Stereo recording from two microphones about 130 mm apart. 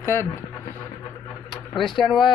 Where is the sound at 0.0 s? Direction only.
20° left (ahead or behind).